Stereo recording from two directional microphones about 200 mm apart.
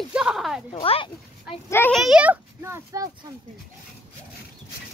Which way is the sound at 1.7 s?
10° left (ahead or behind).